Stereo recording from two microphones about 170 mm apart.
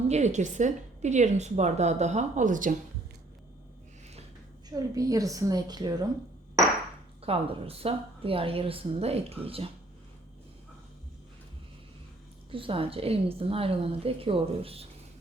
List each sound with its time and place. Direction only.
0.1 s a woman's voice: 45° right (ahead or behind)
4.7 s a woman's voice: 20° right (ahead or behind)
7.2 s a woman's voice: 35° right (ahead or behind)
12.5 s a woman's voice: 30° right (ahead or behind)